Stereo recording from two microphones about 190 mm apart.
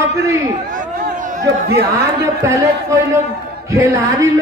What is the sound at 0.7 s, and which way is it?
Chatter, 45° right (ahead or behind).